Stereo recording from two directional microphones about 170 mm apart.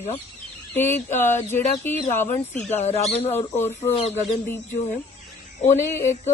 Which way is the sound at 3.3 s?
15° left (ahead or behind).